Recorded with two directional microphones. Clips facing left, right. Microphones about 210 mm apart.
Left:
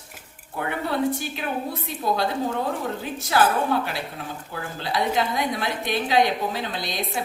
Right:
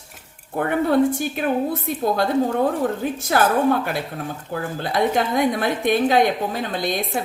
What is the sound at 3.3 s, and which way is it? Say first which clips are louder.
Speech: right 1 dB; 50° right (ahead or behind).